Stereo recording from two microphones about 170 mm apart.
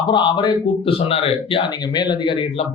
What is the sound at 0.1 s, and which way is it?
A man's voice, 25° left (ahead or behind).